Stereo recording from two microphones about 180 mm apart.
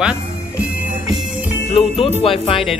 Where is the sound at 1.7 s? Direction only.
35° left (ahead or behind).